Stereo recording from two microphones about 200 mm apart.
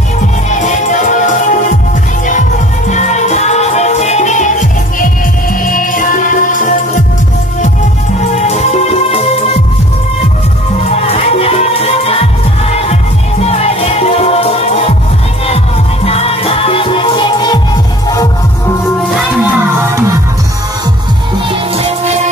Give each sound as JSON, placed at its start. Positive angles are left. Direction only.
{"t": 0.5, "sound": "music", "side_deg": 35}
{"t": 2.9, "sound": "music", "side_deg": 35}
{"t": 8.2, "sound": "music", "side_deg": 35}
{"t": 10.9, "sound": "music", "side_deg": 30}
{"t": 13.5, "sound": "music", "side_deg": 30}
{"t": 16.1, "sound": "music", "side_deg": 30}
{"t": 21.7, "sound": "music", "side_deg": -30}